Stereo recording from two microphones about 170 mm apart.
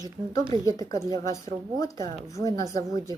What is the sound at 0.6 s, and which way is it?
A woman's voice, 20° left (ahead or behind).